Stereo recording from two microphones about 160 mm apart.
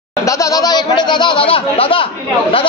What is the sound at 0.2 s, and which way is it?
A man's voice, 20° left (ahead or behind).